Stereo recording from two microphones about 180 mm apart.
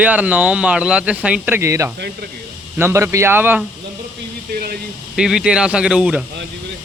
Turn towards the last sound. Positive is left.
turn(degrees=-5)  # may be behind; listen again after turning